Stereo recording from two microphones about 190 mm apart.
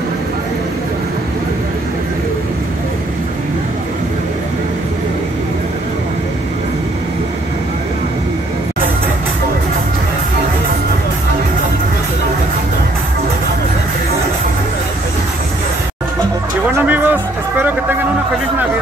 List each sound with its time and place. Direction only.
16.6 s music: 10° right (ahead or behind)